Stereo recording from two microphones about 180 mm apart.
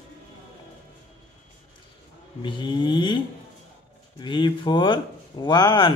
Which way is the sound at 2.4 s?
25° left (ahead or behind).